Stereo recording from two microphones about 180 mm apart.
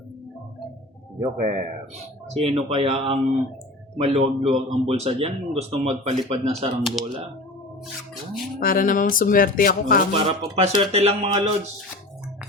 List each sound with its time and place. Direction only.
1.4 s speech: 50° right (ahead or behind)
2.3 s speech: 30° right (ahead or behind)
7.0 s speech: centre (ahead or behind)
8.5 s speech: 50° left (ahead or behind)
10.1 s speech: 35° right (ahead or behind)